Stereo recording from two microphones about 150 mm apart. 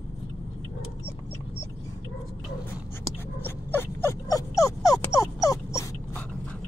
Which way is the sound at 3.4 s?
15° left (ahead or behind).